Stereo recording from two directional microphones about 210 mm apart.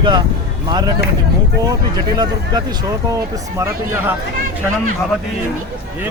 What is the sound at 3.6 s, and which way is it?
Speech, 10° right (ahead or behind).